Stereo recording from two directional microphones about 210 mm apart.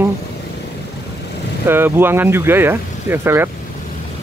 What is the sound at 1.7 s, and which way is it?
Speech, 10° right (ahead or behind).